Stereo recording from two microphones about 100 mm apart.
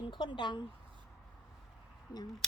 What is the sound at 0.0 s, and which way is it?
Speech, 55° left (ahead or behind).